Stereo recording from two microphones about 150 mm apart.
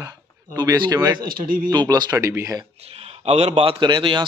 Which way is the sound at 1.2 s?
75° right (ahead or behind).